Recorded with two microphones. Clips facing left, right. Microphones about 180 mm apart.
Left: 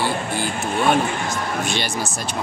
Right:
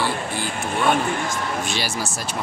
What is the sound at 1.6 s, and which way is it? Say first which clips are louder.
Speech: left 2 dB; 5° right (ahead or behind).